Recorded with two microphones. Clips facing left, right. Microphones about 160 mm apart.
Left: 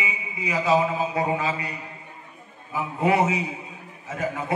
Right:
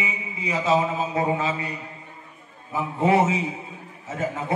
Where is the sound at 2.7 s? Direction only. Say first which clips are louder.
Right 2 dB; 25° right (ahead or behind).